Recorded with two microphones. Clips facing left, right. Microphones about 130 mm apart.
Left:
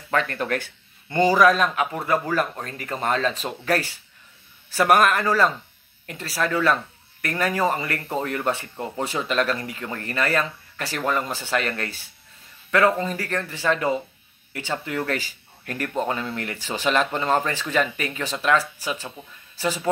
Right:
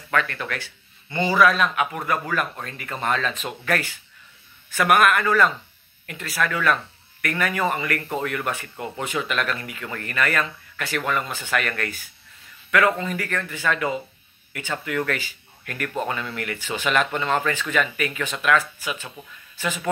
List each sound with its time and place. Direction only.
0.1 s speech: 35° left (ahead or behind)